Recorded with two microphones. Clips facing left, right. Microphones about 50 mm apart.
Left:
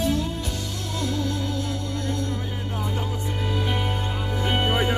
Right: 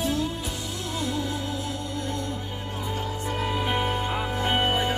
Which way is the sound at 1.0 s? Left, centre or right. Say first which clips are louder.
Left 3 dB; centre.